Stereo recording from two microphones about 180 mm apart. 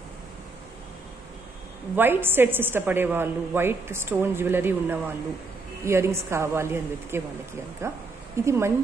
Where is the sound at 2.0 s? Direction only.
10° right (ahead or behind).